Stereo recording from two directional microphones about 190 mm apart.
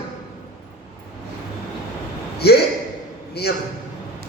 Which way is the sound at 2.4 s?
60° left (ahead or behind).